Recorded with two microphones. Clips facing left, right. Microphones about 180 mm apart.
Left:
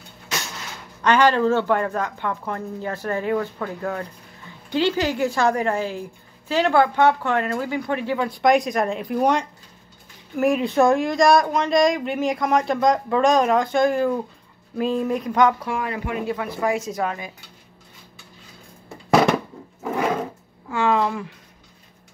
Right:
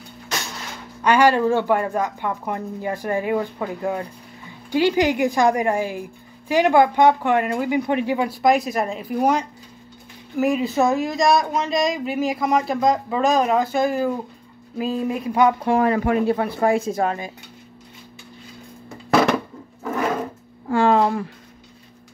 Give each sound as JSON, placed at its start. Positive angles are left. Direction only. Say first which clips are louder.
{"t": 1.0, "sound": "speech", "louder": "right 1 dB", "side_deg": -10}
{"t": 8.4, "sound": "speech", "louder": "left 2 dB", "side_deg": -5}
{"t": 15.6, "sound": "speech", "louder": "right 9 dB", "side_deg": -40}
{"t": 16.3, "sound": "speech", "louder": "right 4 dB", "side_deg": -30}
{"t": 20.6, "sound": "speech", "louder": "right 4 dB", "side_deg": -35}